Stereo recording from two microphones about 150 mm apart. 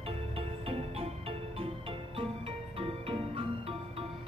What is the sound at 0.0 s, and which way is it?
Music, 40° right (ahead or behind).